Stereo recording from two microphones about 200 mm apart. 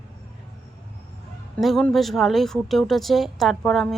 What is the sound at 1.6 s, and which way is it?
Speech, centre (ahead or behind).